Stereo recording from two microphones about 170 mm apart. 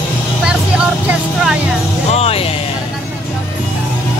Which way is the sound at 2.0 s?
35° left (ahead or behind).